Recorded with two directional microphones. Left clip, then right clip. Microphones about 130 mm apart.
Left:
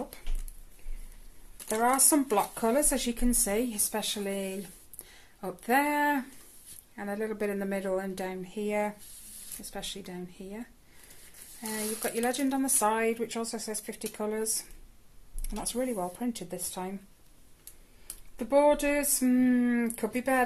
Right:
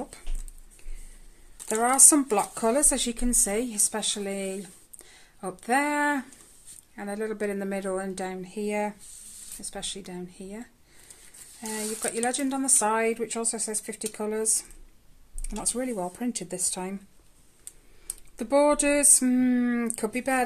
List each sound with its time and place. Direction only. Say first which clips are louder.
1.7 s speech: right 4 dB; 45° right (ahead or behind)
11.6 s speech: right 2 dB; 45° right (ahead or behind)
18.0 s a sound: right 3 dB; 55° right (ahead or behind); by 20.4 s 35° right (ahead or behind)